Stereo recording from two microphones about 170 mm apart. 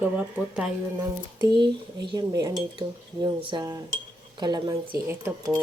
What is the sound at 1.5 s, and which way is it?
Speech, 25° right (ahead or behind).